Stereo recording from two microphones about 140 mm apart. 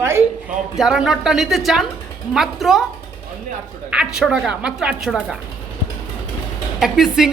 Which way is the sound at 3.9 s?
5° right (ahead or behind).